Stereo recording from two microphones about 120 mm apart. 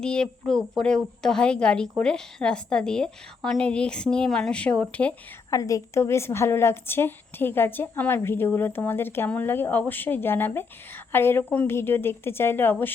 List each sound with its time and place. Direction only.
0.0 s a woman's voice: 5° left (ahead or behind)
5.5 s a woman's voice: 25° left (ahead or behind)